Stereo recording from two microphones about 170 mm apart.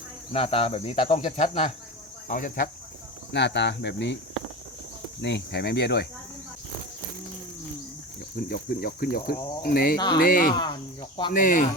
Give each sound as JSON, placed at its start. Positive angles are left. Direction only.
{"t": 0.3, "sound": "speech", "side_deg": 35}
{"t": 2.2, "sound": "speech", "side_deg": 55}
{"t": 3.3, "sound": "speech", "side_deg": 90}
{"t": 5.2, "sound": "speech", "side_deg": 80}
{"t": 8.4, "sound": "speech", "side_deg": 60}
{"t": 10.5, "sound": "speech", "side_deg": 25}
{"t": 11.3, "sound": "speech", "side_deg": 55}